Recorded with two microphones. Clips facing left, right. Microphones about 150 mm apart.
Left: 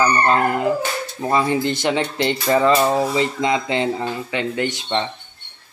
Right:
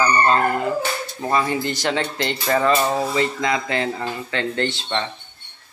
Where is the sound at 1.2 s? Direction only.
20° left (ahead or behind).